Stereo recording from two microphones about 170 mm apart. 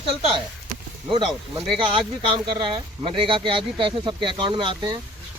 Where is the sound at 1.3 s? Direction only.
Centre (ahead or behind).